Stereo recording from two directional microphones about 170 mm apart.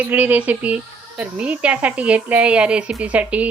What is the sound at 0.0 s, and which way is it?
Speech, 10° right (ahead or behind).